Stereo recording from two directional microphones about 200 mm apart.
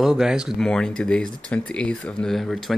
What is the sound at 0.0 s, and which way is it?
Speech, centre (ahead or behind).